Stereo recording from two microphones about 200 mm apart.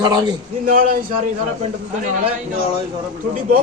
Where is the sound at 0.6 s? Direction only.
45° right (ahead or behind).